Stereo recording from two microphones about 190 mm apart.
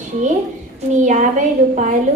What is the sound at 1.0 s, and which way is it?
Speech, 40° right (ahead or behind).